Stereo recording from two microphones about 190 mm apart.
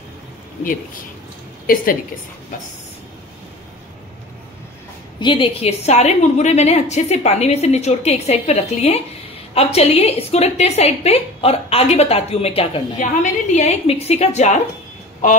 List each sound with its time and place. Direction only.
5.2 s a woman's voice: 25° left (ahead or behind)